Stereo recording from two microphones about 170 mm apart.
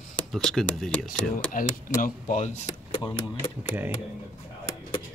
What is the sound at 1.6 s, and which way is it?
Speech, 55° left (ahead or behind).